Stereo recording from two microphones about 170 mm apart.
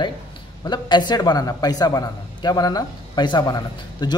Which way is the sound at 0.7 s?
25° left (ahead or behind).